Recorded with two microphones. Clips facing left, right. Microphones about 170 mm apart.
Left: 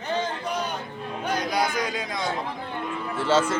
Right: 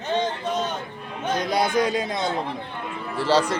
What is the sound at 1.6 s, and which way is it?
Speech, 35° right (ahead or behind).